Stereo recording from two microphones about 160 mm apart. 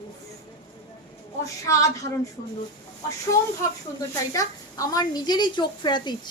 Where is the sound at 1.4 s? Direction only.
20° left (ahead or behind).